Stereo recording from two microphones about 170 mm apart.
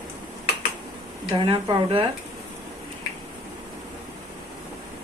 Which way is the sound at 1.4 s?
30° right (ahead or behind).